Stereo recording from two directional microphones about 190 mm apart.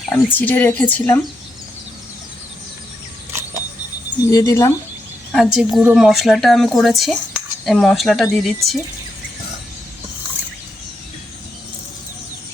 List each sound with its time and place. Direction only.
0.1 s a woman's voice: 10° left (ahead or behind)
4.3 s a woman's voice: 15° left (ahead or behind)
5.3 s speech: centre (ahead or behind)